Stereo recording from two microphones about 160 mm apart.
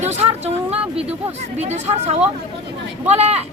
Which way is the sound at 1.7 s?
45° right (ahead or behind).